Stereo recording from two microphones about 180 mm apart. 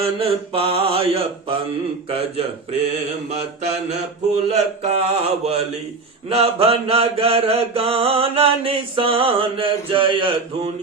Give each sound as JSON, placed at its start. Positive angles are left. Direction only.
{"t": 0.0, "sound": "mantra", "side_deg": -30}